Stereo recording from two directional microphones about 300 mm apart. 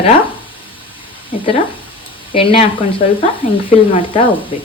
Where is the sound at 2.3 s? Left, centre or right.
Centre.